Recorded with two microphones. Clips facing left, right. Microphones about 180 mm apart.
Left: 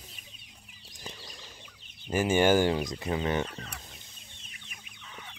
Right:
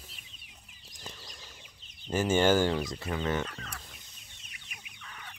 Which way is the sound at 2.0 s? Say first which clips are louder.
Left 1 dB; 10° left (ahead or behind).